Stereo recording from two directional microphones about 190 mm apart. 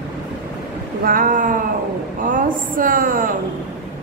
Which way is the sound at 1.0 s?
45° right (ahead or behind).